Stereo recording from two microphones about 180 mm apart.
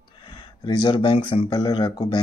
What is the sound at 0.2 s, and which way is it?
Speech, 25° left (ahead or behind).